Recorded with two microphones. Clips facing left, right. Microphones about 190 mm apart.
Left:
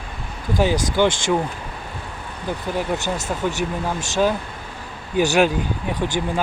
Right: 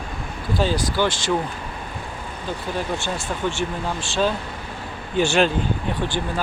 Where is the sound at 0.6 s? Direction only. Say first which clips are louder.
Left 3 dB; 15° left (ahead or behind).